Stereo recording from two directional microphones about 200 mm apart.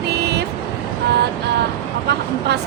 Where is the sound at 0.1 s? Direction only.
55° right (ahead or behind).